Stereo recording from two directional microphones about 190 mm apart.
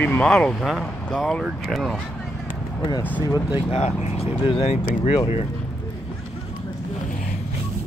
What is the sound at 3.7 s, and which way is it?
Speech, 35° left (ahead or behind).